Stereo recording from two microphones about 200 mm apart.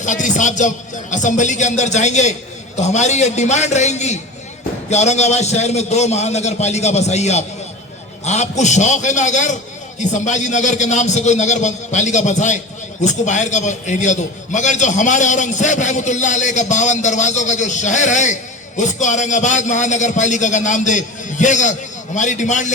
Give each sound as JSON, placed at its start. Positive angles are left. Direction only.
{"t": 0.0, "sound": "a man's voice", "side_deg": 40}